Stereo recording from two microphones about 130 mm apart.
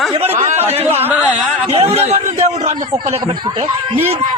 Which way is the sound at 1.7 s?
55° right (ahead or behind).